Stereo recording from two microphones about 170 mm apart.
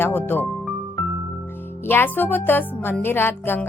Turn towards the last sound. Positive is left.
turn(degrees=15)  # may be behind; listen again after turning